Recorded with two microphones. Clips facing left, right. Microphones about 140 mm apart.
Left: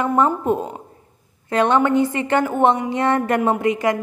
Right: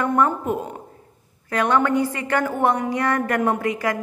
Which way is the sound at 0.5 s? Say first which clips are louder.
Left 4 dB; 30° left (ahead or behind).